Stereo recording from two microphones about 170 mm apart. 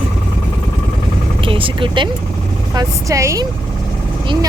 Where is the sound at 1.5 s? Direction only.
30° right (ahead or behind).